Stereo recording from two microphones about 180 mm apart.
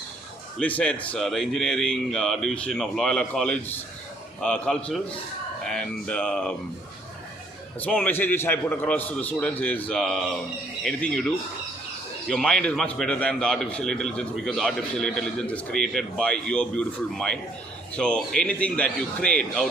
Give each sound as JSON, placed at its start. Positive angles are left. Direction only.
{"t": 0.6, "sound": "a man's voice", "side_deg": 5}
{"t": 7.8, "sound": "a man's voice", "side_deg": 10}
{"t": 12.3, "sound": "a man's voice", "side_deg": 5}